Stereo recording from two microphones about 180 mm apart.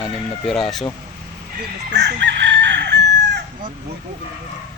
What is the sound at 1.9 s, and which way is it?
Chicken, 75° right (ahead or behind).